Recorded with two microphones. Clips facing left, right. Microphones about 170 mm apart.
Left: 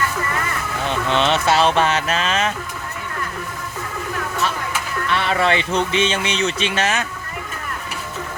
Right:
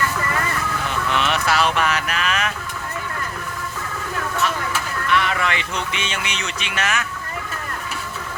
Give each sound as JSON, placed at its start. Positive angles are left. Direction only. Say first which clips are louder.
{"t": 1.0, "sound": "speech", "louder": "left 4 dB", "side_deg": 30}
{"t": 5.1, "sound": "a man's voice", "louder": "left 3 dB", "side_deg": 30}